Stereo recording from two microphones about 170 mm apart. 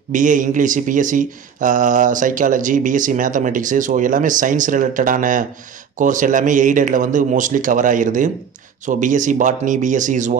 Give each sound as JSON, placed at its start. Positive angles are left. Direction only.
{"t": 0.1, "sound": "speech", "side_deg": -50}